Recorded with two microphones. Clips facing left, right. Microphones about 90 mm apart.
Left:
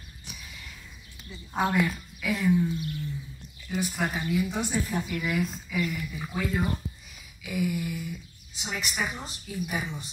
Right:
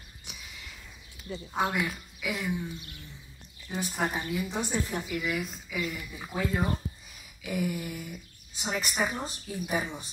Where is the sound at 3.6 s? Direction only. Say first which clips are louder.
Left 1 dB; 30° right (ahead or behind).